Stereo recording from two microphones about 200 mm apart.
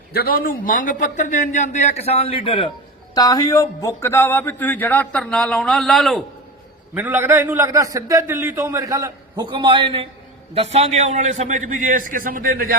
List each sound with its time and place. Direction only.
0.1 s a man's voice: 50° left (ahead or behind); by 6.2 s centre (ahead or behind)
6.9 s a man's voice: 10° right (ahead or behind); by 12.7 s 45° right (ahead or behind)